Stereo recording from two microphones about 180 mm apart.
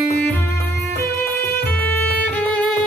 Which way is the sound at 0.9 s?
10° left (ahead or behind).